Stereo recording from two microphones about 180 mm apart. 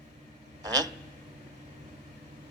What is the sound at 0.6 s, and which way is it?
Speech, 20° right (ahead or behind).